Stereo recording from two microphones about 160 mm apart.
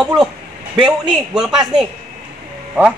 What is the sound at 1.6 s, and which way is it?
Speech, 30° right (ahead or behind).